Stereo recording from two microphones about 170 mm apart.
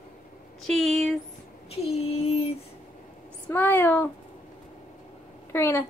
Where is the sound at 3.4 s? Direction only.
10° left (ahead or behind).